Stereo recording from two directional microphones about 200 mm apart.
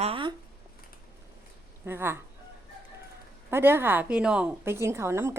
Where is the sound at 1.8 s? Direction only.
10° right (ahead or behind).